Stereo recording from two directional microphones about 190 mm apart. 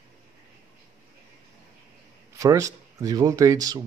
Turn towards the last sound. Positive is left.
turn(degrees=-20)  # may be behind; listen again after turning